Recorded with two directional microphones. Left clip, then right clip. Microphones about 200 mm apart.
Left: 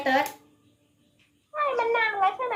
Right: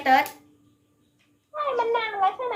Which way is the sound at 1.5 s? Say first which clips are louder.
Even; centre (ahead or behind).